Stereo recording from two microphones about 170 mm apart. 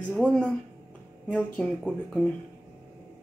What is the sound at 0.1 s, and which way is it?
Speech, 5° left (ahead or behind).